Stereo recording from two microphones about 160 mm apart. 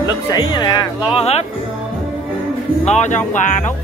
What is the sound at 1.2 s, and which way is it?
Speech, 40° left (ahead or behind).